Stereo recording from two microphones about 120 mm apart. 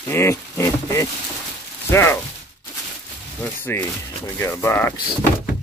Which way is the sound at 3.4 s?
20° left (ahead or behind).